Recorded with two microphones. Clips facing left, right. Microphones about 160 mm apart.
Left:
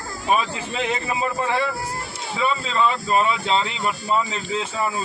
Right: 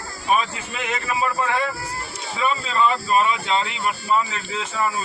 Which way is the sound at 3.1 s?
30° left (ahead or behind).